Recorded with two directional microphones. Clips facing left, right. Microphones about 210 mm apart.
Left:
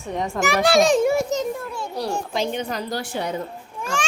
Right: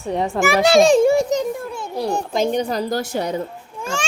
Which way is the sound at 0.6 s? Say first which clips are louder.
Right 4 dB; 25° right (ahead or behind).